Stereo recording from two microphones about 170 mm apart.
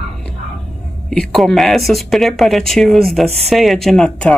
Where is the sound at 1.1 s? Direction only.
Centre (ahead or behind).